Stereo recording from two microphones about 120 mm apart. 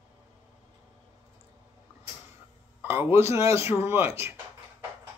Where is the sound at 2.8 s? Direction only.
20° right (ahead or behind).